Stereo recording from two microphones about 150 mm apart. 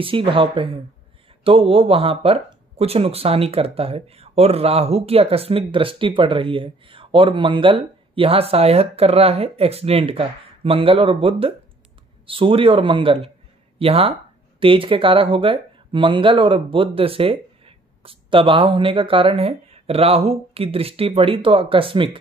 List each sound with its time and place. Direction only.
0.0 s speech: 35° right (ahead or behind)